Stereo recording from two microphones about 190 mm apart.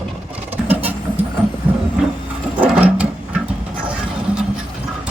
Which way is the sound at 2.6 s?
5° right (ahead or behind).